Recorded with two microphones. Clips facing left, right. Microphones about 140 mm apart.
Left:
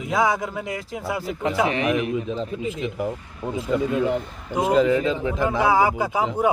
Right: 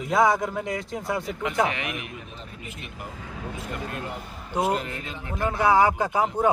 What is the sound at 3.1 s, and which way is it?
Speech, 90° right.